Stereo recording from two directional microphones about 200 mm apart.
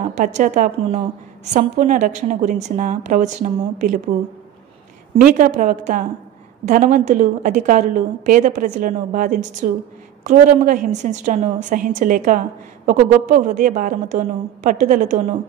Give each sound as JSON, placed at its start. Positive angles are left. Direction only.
{"t": 0.0, "sound": "a woman's voice", "side_deg": -40}
{"t": 5.2, "sound": "a woman's voice", "side_deg": -40}